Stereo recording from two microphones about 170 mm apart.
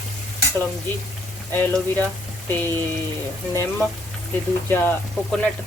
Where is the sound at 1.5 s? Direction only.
10° left (ahead or behind).